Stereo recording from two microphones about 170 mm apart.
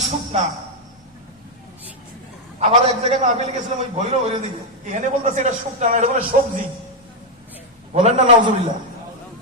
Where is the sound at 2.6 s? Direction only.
35° right (ahead or behind).